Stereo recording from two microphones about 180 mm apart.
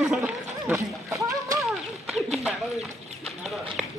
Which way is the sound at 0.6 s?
15° right (ahead or behind).